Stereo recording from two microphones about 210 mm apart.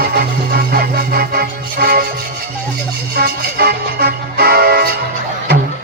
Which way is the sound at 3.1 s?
45° right (ahead or behind).